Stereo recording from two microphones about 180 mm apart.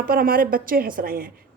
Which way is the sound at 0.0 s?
55° right (ahead or behind).